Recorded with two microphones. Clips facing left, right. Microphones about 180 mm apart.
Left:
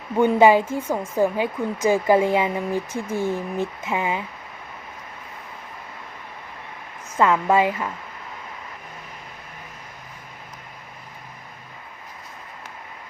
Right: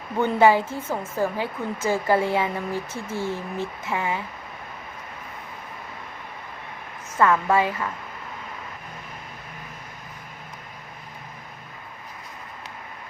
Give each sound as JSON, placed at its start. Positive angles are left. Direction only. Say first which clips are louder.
{"t": 0.2, "sound": "a woman's voice", "louder": "left 3 dB", "side_deg": 15}
{"t": 7.2, "sound": "a woman's voice", "louder": "left 2 dB", "side_deg": 15}